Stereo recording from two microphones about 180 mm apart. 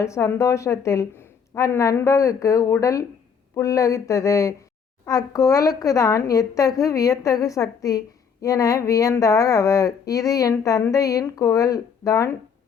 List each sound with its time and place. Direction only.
0.0 s a woman's voice: 15° left (ahead or behind)